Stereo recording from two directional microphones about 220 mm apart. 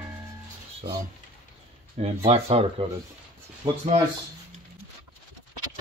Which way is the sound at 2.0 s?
30° right (ahead or behind).